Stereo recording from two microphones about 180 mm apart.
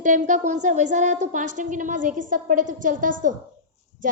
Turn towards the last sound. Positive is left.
turn(degrees=-45)  # may be behind; listen again after turning